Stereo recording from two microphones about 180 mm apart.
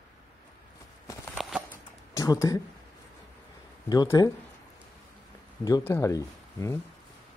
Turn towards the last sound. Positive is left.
turn(degrees=15)  # may be behind; listen again after turning